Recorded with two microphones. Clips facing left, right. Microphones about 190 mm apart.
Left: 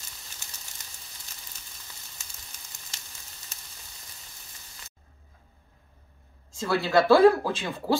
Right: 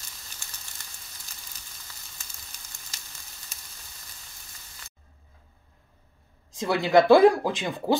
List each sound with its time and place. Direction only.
6.5 s speech: 20° right (ahead or behind)